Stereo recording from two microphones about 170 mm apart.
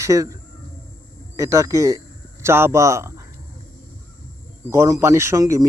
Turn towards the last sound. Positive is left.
turn(degrees=-20)  # may be behind; listen again after turning